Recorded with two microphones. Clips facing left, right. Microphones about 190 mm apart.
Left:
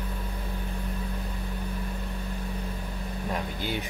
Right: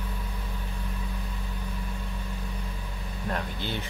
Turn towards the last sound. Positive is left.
turn(degrees=10)  # may be behind; listen again after turning